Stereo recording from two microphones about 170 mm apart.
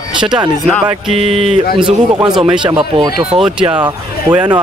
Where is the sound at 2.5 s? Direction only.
30° right (ahead or behind).